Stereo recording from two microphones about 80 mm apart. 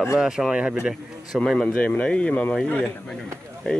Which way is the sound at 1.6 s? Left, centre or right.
Centre.